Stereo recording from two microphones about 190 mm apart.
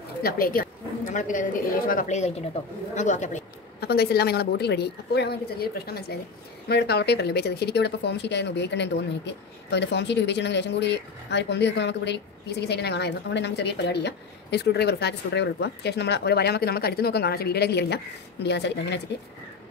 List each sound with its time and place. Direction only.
0.2 s a woman's voice: 50° left (ahead or behind)
3.8 s speech: 55° left (ahead or behind)